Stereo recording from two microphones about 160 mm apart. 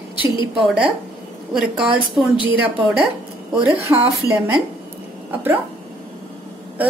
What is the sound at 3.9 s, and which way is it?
Speech, 15° right (ahead or behind).